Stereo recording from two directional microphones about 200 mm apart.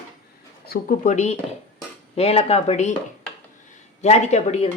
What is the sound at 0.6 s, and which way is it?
Speech, 45° left (ahead or behind).